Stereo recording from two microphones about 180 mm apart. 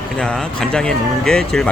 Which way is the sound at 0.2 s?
5° left (ahead or behind).